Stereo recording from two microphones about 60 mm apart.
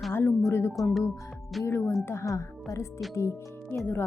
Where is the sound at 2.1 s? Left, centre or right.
Left.